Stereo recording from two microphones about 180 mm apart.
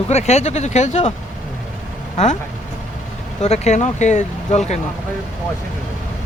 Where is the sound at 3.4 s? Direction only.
35° left (ahead or behind).